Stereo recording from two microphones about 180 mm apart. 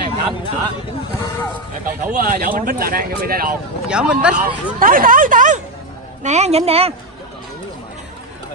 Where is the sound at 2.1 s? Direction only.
55° right (ahead or behind).